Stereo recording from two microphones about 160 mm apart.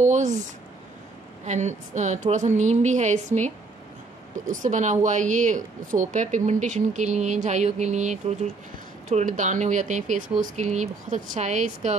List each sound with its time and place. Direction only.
0.0 s a woman's voice: 50° right (ahead or behind)
1.4 s a woman's voice: 45° right (ahead or behind)